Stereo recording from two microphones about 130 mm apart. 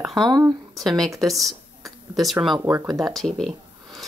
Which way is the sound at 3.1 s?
5° left (ahead or behind).